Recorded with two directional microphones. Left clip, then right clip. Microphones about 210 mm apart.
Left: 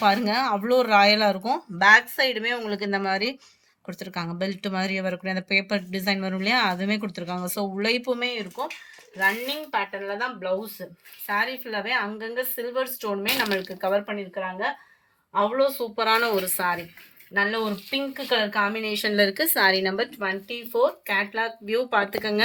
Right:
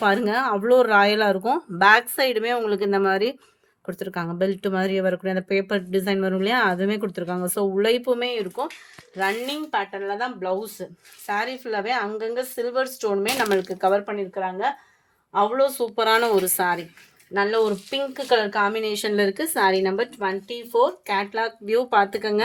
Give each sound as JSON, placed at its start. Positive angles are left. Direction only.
{"t": 0.0, "sound": "speech", "side_deg": -45}
{"t": 9.7, "sound": "speech", "side_deg": -50}
{"t": 15.3, "sound": "speech", "side_deg": -55}
{"t": 19.0, "sound": "speech", "side_deg": -45}